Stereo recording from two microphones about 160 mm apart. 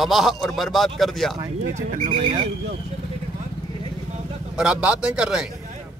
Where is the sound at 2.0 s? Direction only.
35° right (ahead or behind).